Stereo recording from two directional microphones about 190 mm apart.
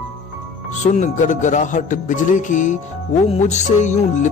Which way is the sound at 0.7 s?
40° left (ahead or behind).